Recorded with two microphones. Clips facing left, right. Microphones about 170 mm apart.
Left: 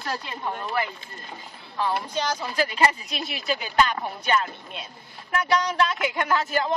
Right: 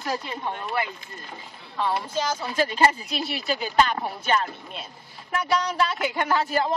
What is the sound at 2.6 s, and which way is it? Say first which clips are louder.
Speech: right 2 dB; 30° right (ahead or behind).